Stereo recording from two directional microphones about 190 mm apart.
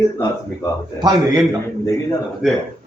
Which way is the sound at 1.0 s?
20° right (ahead or behind).